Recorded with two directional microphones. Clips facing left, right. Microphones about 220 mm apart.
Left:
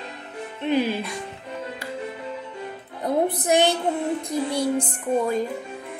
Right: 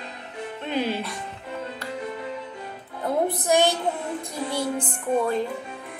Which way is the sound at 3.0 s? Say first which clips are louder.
Left 2 dB; 20° left (ahead or behind).